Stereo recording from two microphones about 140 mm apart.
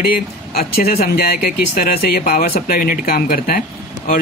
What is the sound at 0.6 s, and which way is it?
Speech, 90° left.